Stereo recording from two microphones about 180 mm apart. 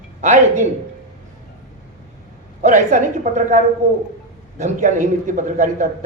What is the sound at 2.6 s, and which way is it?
Speech, 40° right (ahead or behind).